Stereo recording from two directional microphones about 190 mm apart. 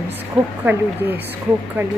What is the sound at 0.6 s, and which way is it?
Speech, 10° right (ahead or behind).